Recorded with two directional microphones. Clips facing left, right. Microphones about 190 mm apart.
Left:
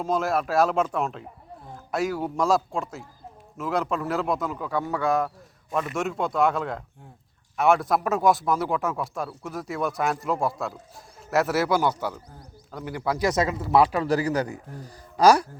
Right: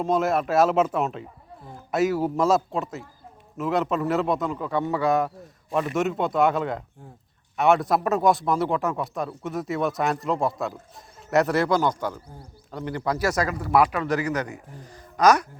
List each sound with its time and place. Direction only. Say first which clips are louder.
0.0 s speech: right 2 dB; centre (ahead or behind)
13.1 s speech: left 1 dB; 15° left (ahead or behind)